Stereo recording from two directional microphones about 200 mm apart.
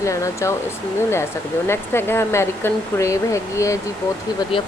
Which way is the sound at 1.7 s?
10° left (ahead or behind).